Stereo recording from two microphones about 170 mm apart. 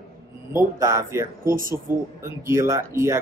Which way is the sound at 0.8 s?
20° right (ahead or behind).